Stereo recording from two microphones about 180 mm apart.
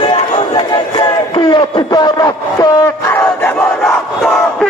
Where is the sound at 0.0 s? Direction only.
30° left (ahead or behind).